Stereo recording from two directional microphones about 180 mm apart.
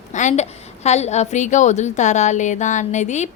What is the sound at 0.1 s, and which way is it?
A woman's voice, 40° left (ahead or behind).